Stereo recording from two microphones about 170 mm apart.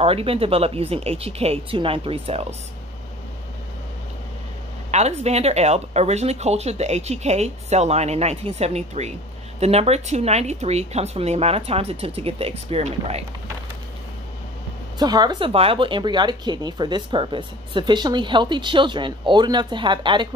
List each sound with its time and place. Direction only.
0.0 s speech: 35° right (ahead or behind)
4.9 s speech: 40° right (ahead or behind)
15.0 s speech: 25° right (ahead or behind)